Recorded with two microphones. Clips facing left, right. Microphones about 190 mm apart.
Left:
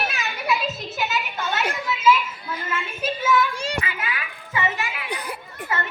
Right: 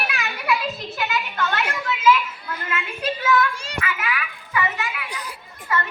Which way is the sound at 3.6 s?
30° left (ahead or behind).